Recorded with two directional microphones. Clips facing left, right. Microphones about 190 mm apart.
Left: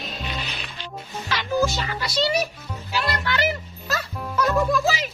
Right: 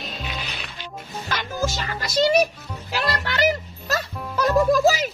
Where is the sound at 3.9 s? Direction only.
40° right (ahead or behind).